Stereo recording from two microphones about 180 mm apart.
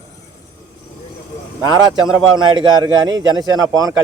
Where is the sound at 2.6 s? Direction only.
25° right (ahead or behind).